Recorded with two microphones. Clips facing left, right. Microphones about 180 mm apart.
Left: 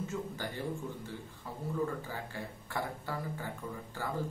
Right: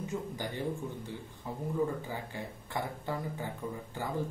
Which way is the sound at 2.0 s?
20° right (ahead or behind).